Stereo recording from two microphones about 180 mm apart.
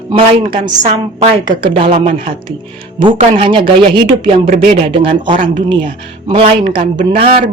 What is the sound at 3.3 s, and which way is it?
A woman's voice, 30° right (ahead or behind).